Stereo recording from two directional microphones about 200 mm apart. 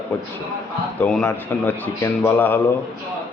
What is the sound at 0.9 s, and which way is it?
Speech, 5° left (ahead or behind).